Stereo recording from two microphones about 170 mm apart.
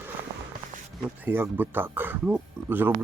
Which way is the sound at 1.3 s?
10° right (ahead or behind).